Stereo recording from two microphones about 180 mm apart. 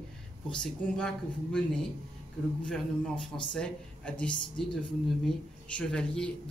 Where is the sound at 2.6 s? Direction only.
5° left (ahead or behind).